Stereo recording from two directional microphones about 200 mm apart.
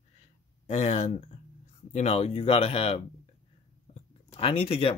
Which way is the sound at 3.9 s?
30° left (ahead or behind).